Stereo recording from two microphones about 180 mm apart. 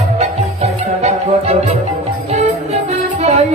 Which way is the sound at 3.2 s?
40° right (ahead or behind).